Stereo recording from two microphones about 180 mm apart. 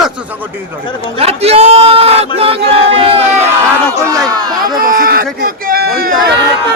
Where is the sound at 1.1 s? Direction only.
35° right (ahead or behind).